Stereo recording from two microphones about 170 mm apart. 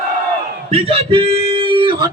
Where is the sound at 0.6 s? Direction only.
35° right (ahead or behind).